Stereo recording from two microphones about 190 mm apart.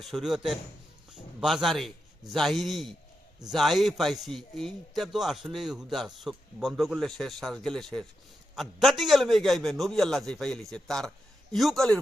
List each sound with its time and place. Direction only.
0.0 s a man's voice: centre (ahead or behind)
1.1 s a sound: centre (ahead or behind)
2.3 s a man's voice: centre (ahead or behind)